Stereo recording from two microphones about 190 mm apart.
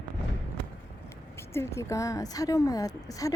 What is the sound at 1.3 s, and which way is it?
Speech, 15° left (ahead or behind).